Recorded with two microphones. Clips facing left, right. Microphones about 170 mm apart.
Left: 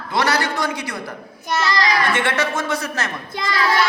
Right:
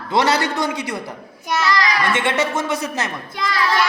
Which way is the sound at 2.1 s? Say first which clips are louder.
Right 1 dB; 20° right (ahead or behind).